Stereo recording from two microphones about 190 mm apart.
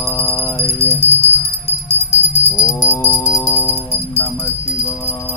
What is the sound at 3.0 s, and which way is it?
Music, 15° left (ahead or behind).